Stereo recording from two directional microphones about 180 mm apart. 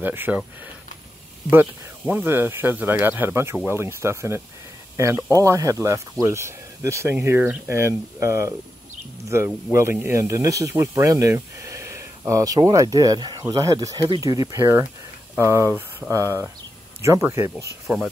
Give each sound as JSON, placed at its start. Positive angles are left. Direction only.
{"t": 0.0, "sound": "speech", "side_deg": -10}
{"t": 1.5, "sound": "speech", "side_deg": -10}